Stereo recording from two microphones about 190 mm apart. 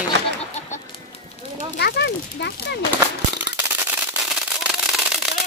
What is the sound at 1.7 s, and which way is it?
Speech, 60° left (ahead or behind).